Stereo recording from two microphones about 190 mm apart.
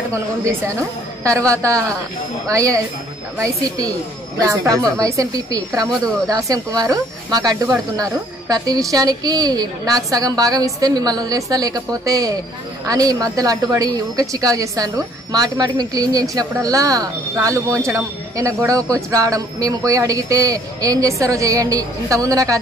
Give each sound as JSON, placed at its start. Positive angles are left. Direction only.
{"t": 0.1, "sound": "a woman's voice", "side_deg": -15}